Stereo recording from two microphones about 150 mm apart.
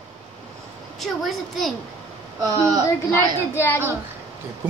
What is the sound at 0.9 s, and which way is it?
Speech, centre (ahead or behind).